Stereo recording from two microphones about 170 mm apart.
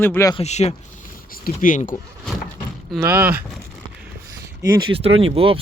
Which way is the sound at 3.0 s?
10° right (ahead or behind).